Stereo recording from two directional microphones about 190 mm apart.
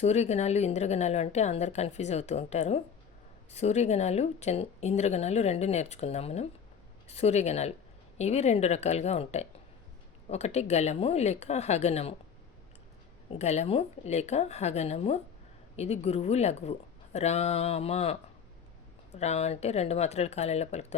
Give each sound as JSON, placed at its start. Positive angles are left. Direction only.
{"t": 0.0, "sound": "speech", "side_deg": 35}
{"t": 13.3, "sound": "speech", "side_deg": 35}